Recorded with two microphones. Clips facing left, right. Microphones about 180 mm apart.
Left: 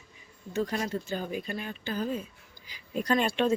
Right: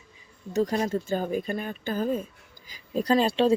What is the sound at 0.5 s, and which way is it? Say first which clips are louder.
Speech: right 5 dB; 40° right (ahead or behind).